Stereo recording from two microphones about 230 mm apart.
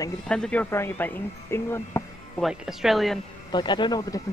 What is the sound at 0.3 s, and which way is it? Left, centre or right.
Speech, centre.